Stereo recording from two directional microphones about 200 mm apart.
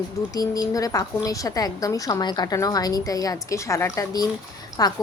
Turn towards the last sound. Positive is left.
turn(degrees=20)  # may be behind; listen again after turning